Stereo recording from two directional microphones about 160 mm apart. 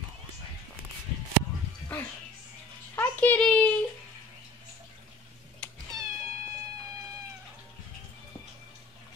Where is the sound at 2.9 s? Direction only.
10° left (ahead or behind).